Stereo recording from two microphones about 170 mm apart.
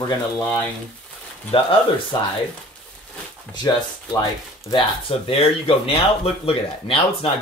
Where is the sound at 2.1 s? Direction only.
25° left (ahead or behind).